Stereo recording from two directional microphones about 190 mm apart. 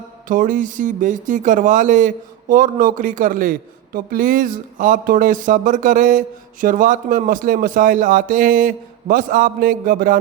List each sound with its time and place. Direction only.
0.3 s speech: 45° right (ahead or behind)